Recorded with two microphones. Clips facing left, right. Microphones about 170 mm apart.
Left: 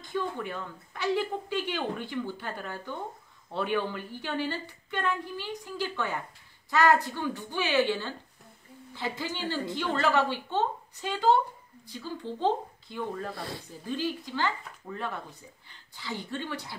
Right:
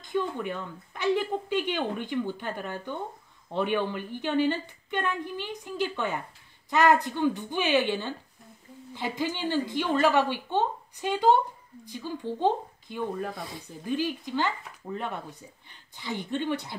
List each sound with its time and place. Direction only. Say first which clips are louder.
0.0 s a woman's voice: right 3 dB; 15° right (ahead or behind)